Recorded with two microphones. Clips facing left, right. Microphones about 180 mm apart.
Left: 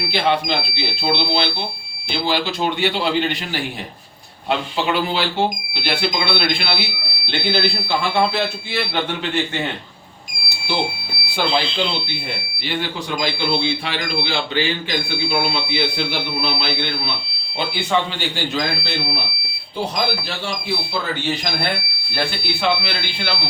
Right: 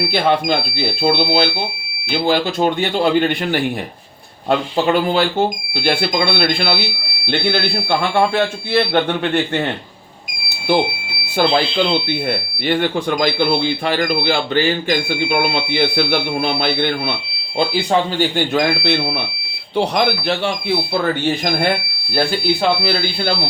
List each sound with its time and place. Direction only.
0.1 s speech: 50° right (ahead or behind)
7.3 s a man's voice: 55° right (ahead or behind)
12.6 s a man's voice: 55° right (ahead or behind)
21.0 s speech: 50° right (ahead or behind)
22.1 s speech: 40° right (ahead or behind)